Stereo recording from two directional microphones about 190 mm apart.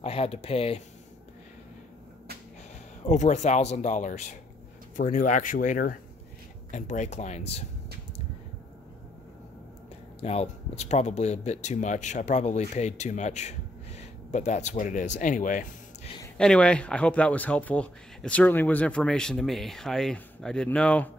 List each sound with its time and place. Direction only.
0.0 s speech: 30° left (ahead or behind)
3.1 s speech: 40° left (ahead or behind)
10.2 s speech: 35° left (ahead or behind)
16.3 s speech: 5° left (ahead or behind)